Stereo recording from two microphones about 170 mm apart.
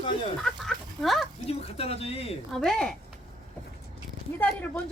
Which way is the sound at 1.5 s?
35° left (ahead or behind).